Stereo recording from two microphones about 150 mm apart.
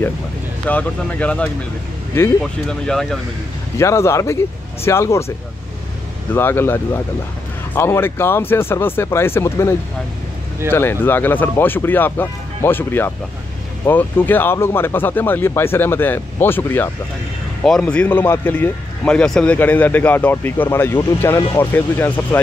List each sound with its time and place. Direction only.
0.7 s a man's voice: 10° left (ahead or behind)
3.7 s a man's voice: 20° left (ahead or behind)
6.3 s a man's voice: 15° left (ahead or behind)